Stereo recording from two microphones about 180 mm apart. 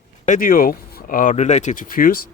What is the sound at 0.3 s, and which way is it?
Speech, 50° left (ahead or behind).